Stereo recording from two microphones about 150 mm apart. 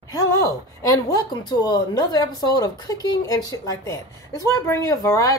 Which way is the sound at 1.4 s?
25° left (ahead or behind).